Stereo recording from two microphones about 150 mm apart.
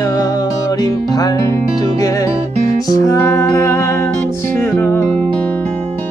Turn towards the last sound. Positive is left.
turn(degrees=10)  # may be behind; listen again after turning